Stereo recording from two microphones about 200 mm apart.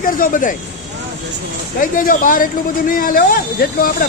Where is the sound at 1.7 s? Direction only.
45° left (ahead or behind).